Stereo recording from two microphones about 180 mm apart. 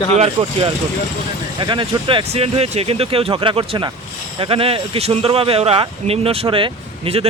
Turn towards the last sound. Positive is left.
turn(degrees=-30)  # may be behind; listen again after turning